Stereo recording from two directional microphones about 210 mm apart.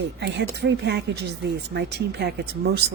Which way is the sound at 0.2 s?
55° right (ahead or behind).